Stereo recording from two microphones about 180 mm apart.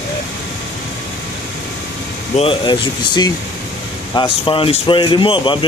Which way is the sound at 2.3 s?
30° left (ahead or behind).